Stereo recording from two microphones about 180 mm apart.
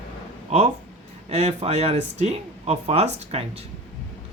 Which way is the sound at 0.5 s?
40° right (ahead or behind).